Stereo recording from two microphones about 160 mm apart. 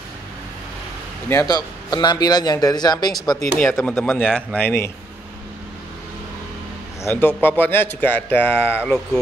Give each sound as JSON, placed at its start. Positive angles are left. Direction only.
{"t": 1.3, "sound": "a man's voice", "side_deg": 25}
{"t": 3.5, "sound": "speech", "side_deg": 5}
{"t": 7.0, "sound": "a man's voice", "side_deg": 15}